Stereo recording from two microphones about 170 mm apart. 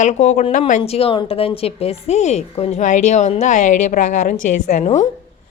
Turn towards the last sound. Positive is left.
turn(degrees=45)  # may be behind; listen again after turning